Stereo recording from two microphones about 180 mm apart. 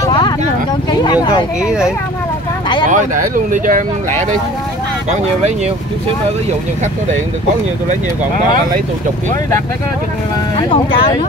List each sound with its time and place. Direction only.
0.0 s a sound: 25° left (ahead or behind)
1.6 s speech: 5° right (ahead or behind)
2.9 s speech: 45° right (ahead or behind)
10.7 s speech: 30° left (ahead or behind)